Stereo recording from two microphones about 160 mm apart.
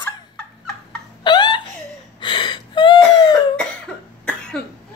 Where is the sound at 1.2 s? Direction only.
30° left (ahead or behind).